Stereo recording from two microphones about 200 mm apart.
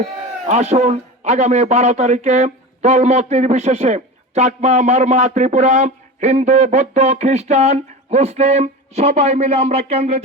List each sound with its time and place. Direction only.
0.4 s a man's voice: 35° right (ahead or behind)